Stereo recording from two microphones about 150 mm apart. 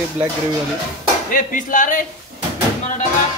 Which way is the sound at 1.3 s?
60° left (ahead or behind).